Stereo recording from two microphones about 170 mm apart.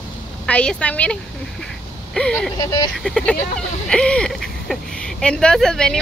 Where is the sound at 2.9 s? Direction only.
5° left (ahead or behind).